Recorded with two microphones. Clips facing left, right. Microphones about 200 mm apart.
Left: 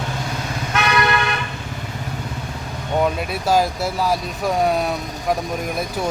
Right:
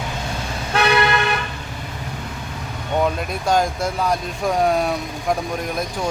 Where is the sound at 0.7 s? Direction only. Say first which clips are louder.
Right 3 dB; 30° right (ahead or behind).